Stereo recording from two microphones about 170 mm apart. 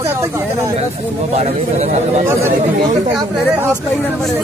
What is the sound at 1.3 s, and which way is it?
Speech, 40° right (ahead or behind).